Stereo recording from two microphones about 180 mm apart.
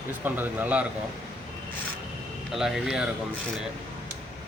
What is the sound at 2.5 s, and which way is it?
Speech, centre (ahead or behind).